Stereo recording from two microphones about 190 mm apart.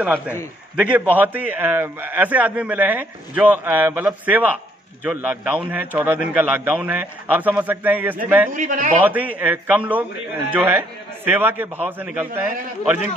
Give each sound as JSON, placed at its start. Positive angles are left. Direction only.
{"t": 0.7, "sound": "a man's voice", "side_deg": -10}
{"t": 8.5, "sound": "a man's voice", "side_deg": -45}
{"t": 9.0, "sound": "a man's voice", "side_deg": -10}